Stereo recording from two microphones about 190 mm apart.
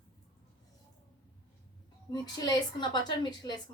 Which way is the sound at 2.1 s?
20° left (ahead or behind).